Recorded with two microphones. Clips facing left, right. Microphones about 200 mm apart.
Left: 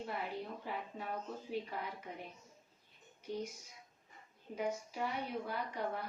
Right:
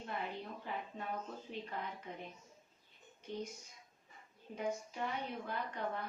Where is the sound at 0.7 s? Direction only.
5° left (ahead or behind).